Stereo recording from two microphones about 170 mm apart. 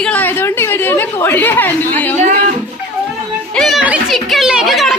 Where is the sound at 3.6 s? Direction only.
Centre (ahead or behind).